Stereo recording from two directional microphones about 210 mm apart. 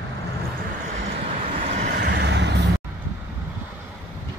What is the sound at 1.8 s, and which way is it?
Vehicle, 45° right (ahead or behind).